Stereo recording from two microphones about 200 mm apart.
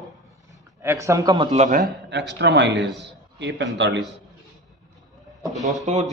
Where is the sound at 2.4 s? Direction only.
60° right (ahead or behind).